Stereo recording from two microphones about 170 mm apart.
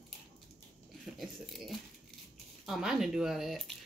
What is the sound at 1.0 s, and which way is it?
Speech, centre (ahead or behind).